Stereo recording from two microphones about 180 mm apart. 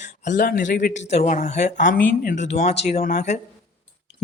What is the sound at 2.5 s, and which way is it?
Speech, 40° left (ahead or behind).